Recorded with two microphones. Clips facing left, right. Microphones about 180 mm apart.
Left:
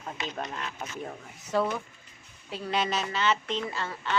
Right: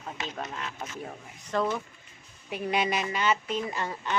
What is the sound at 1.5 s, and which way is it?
Speech, 5° left (ahead or behind).